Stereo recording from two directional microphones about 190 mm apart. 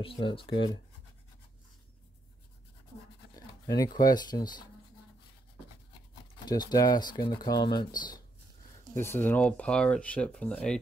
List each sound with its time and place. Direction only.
0.0 s speech: 30° left (ahead or behind)
3.3 s speech: 20° left (ahead or behind)
6.4 s speech: 20° left (ahead or behind); by 10.8 s 5° left (ahead or behind)